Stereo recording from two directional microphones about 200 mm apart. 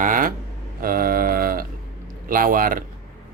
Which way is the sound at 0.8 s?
45° right (ahead or behind).